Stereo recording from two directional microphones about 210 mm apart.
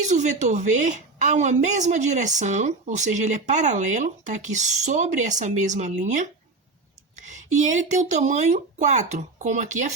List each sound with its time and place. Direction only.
0.0 s a woman's voice: 35° right (ahead or behind)